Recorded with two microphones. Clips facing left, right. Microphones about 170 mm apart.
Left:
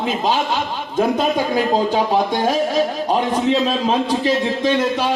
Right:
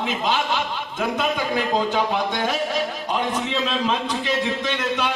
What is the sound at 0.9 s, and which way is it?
A man's voice, 35° left (ahead or behind).